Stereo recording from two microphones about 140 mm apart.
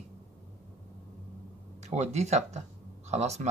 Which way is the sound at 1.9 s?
55° right (ahead or behind).